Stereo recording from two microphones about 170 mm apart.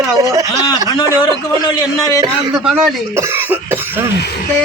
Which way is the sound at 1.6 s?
25° left (ahead or behind).